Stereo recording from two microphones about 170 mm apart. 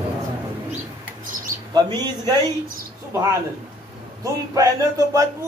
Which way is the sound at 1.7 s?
25° right (ahead or behind).